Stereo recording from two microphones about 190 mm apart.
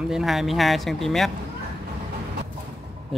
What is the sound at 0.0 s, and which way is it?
Speech, centre (ahead or behind).